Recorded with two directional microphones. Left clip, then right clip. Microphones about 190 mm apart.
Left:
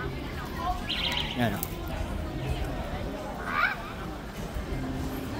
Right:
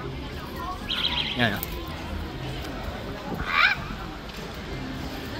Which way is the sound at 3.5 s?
15° right (ahead or behind).